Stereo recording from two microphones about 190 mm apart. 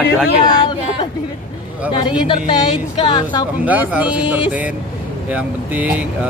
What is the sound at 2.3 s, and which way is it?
A woman's voice, 25° left (ahead or behind).